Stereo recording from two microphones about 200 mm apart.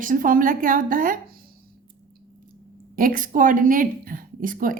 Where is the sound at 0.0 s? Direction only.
40° right (ahead or behind).